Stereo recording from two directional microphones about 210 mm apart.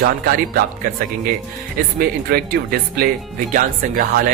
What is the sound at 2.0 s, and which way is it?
Speech, 45° right (ahead or behind).